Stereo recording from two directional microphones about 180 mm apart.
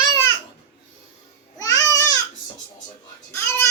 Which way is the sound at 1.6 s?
20° left (ahead or behind).